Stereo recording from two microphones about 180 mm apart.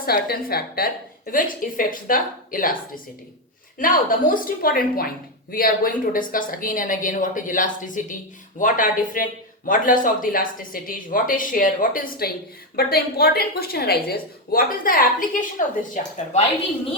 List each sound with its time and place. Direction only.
0.0 s a woman's voice: 55° left (ahead or behind)